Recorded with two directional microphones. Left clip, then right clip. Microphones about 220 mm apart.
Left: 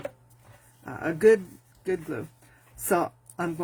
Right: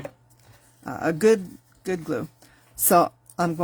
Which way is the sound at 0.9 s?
40° right (ahead or behind).